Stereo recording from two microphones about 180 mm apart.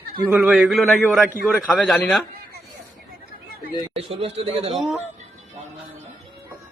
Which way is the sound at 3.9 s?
35° right (ahead or behind).